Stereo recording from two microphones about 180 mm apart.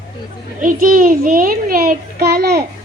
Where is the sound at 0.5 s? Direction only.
50° right (ahead or behind).